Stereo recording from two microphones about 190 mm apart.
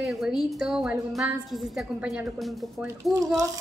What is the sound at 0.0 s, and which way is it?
A woman's voice, centre (ahead or behind).